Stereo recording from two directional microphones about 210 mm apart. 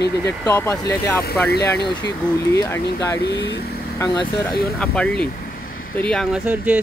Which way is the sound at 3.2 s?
50° left (ahead or behind).